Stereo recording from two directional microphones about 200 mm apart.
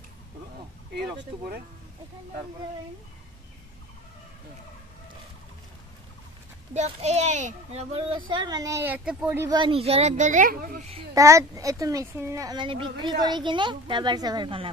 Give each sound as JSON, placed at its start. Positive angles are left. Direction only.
{"t": 0.9, "sound": "speech", "side_deg": -55}
{"t": 6.7, "sound": "a child's voice", "side_deg": -35}
{"t": 11.1, "sound": "a child's voice", "side_deg": -15}